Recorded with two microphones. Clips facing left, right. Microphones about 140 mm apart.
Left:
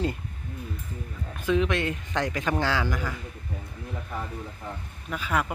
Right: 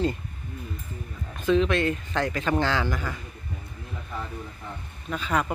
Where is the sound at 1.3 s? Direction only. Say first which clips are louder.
Right 3 dB; 10° left (ahead or behind).